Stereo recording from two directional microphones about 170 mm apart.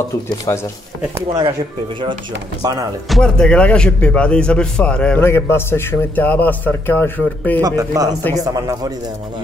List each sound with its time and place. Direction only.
0.5 s speech: 20° left (ahead or behind)
1.1 s a man's voice: 20° right (ahead or behind)
2.6 s a man's voice: 20° right (ahead or behind)
3.1 s speech: 5° left (ahead or behind)
7.6 s a man's voice: 20° right (ahead or behind)